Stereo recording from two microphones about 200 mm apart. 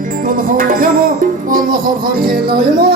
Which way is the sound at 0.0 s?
45° right (ahead or behind).